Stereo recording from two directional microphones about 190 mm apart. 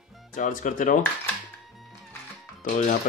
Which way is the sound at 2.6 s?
45° left (ahead or behind).